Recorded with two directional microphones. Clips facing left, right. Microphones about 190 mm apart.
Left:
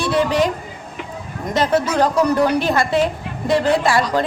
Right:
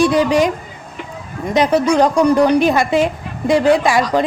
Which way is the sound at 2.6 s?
20° right (ahead or behind).